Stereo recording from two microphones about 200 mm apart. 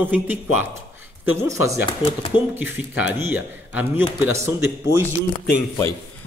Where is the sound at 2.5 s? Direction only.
10° right (ahead or behind).